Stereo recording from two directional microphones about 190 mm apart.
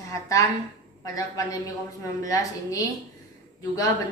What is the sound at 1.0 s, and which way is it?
A woman's voice, 20° left (ahead or behind).